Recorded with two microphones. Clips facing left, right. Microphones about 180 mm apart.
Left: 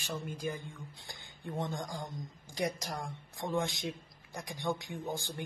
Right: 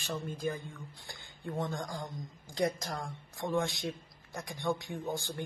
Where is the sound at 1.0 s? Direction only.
20° left (ahead or behind).